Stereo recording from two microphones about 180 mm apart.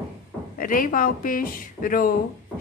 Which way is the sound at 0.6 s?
50° left (ahead or behind).